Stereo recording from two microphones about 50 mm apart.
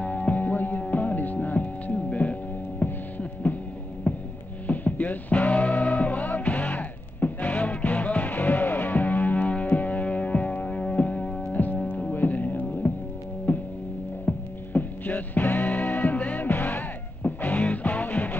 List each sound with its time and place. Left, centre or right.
0.0 s music: left
2.8 s hum: left
4.6 s music: left